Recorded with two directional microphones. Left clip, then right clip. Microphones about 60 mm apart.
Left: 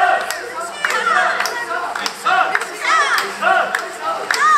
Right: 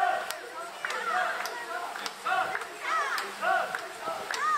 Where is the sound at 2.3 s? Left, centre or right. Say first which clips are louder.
Left 14 dB; centre.